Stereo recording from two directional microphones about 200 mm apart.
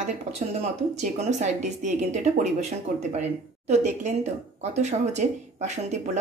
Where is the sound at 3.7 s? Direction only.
35° right (ahead or behind).